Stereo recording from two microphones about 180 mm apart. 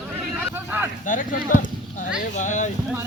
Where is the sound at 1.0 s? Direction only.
45° left (ahead or behind).